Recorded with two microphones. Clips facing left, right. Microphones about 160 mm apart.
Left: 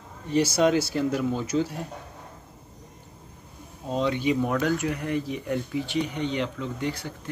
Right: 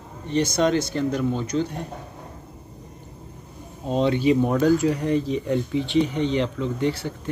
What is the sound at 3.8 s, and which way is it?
Speech, 20° right (ahead or behind).